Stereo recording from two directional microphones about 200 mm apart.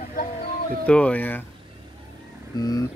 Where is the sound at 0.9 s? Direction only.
5° left (ahead or behind).